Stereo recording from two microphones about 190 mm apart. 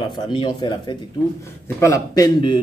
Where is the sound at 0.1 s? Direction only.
25° left (ahead or behind).